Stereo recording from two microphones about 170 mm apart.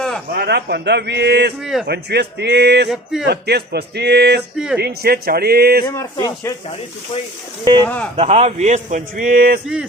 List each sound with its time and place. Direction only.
0.3 s a man's voice: 75° right (ahead or behind)
2.9 s speech: centre (ahead or behind)
3.2 s speech: 75° right (ahead or behind)
4.5 s speech: 5° right (ahead or behind)
4.8 s speech: 65° right (ahead or behind)
5.8 s speech: 20° left (ahead or behind)
7.6 s speech: 25° right (ahead or behind)
8.1 s a man's voice: 40° right (ahead or behind); by 9.6 s 55° right (ahead or behind)